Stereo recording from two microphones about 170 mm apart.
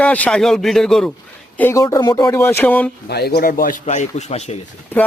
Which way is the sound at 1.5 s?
15° left (ahead or behind).